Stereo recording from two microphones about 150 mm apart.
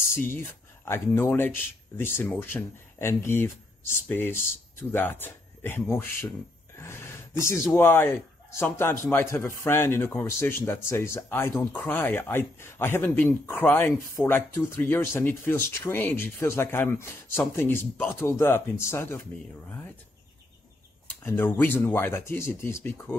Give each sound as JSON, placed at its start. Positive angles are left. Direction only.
{"t": 0.1, "sound": "speech", "side_deg": 15}
{"t": 21.2, "sound": "speech", "side_deg": 15}